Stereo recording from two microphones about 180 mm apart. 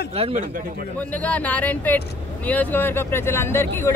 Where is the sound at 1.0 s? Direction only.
10° left (ahead or behind).